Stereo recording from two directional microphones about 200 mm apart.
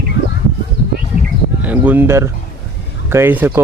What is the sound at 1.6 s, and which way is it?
Speech, 10° right (ahead or behind).